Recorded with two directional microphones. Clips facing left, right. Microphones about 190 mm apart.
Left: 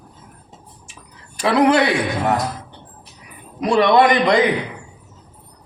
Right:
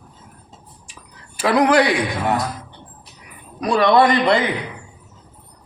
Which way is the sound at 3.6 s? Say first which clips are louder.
Left 1 dB; 20° left (ahead or behind).